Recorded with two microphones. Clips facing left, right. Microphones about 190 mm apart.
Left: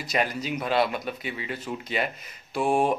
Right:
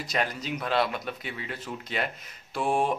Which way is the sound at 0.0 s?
5° left (ahead or behind).